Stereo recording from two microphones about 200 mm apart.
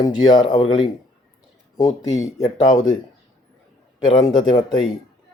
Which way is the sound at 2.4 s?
25° left (ahead or behind).